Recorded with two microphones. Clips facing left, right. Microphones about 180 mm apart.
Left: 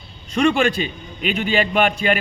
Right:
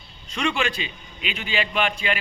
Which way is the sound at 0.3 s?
45° left (ahead or behind).